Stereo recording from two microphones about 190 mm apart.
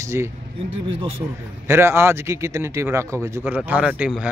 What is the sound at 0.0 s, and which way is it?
Speech, 15° right (ahead or behind).